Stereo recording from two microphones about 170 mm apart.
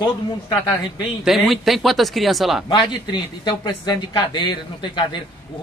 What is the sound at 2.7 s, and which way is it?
Speech, 25° left (ahead or behind).